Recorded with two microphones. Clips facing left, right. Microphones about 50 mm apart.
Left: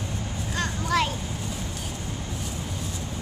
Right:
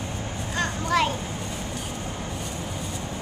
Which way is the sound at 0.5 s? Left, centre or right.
Centre.